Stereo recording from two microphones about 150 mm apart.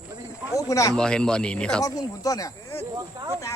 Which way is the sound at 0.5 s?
20° left (ahead or behind).